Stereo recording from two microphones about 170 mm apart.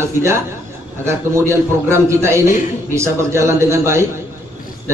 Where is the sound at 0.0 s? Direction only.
15° right (ahead or behind).